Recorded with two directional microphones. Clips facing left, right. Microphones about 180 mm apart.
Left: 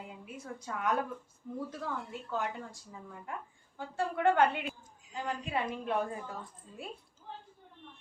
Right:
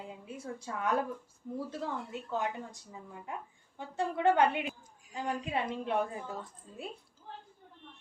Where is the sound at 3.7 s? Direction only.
20° right (ahead or behind).